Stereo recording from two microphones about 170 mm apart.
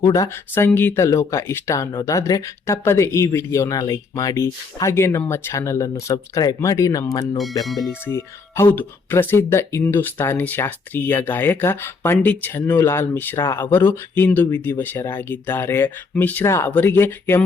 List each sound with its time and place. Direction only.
0.0 s speech: 20° left (ahead or behind)
7.6 s speech: centre (ahead or behind)
8.0 s speech: 15° left (ahead or behind)